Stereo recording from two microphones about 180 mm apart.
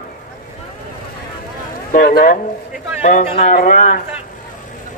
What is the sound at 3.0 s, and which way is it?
A man's voice, 45° left (ahead or behind).